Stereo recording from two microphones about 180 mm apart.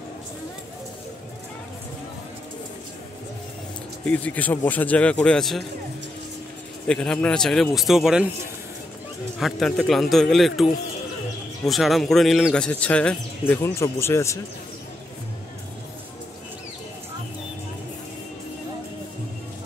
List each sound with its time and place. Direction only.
4.0 s speech: 10° left (ahead or behind)
6.9 s speech: 5° left (ahead or behind)
9.4 s speech: centre (ahead or behind)